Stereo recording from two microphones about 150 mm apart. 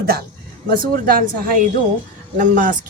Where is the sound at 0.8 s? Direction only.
70° right (ahead or behind).